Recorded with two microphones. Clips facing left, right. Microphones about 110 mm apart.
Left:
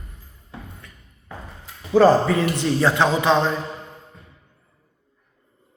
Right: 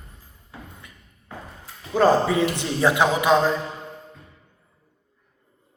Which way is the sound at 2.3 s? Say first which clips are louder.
Left 2 dB; 15° right (ahead or behind).